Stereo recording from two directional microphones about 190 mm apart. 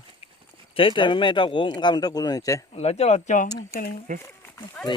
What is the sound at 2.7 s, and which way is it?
Speech, 35° left (ahead or behind).